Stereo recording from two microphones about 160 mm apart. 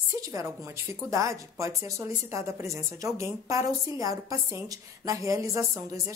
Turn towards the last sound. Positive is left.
turn(degrees=-20)  # may be behind; listen again after turning